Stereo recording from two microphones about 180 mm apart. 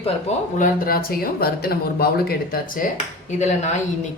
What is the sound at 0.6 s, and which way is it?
Speech, 55° left (ahead or behind).